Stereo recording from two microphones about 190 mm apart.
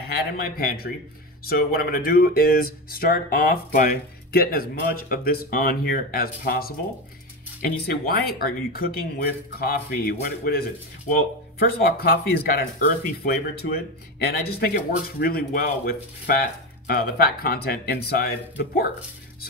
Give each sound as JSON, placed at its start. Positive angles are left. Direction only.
{"t": 0.1, "sound": "speech", "side_deg": 55}